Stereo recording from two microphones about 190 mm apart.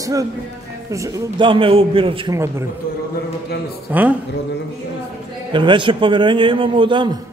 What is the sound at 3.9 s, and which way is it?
Speech, 10° right (ahead or behind).